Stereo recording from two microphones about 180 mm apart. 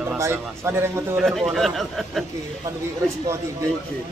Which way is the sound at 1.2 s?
Centre (ahead or behind).